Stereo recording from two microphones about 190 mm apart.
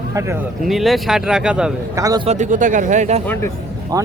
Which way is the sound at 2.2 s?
40° right (ahead or behind).